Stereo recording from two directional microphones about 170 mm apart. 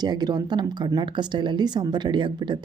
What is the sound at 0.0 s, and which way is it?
Speech, 25° right (ahead or behind).